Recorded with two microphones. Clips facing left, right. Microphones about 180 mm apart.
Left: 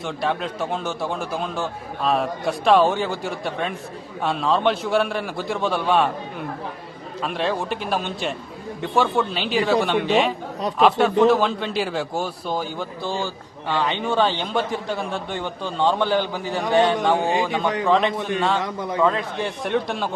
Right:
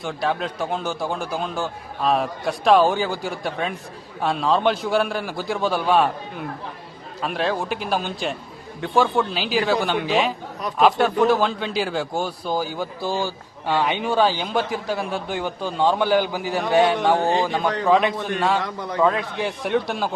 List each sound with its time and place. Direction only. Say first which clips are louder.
0.0 s a man's voice: even; centre (ahead or behind)
7.2 s a man's voice: even; centre (ahead or behind)
18.6 s a man's voice: left 2 dB; 20° left (ahead or behind)
19.0 s a man's voice: right 2 dB; 5° right (ahead or behind)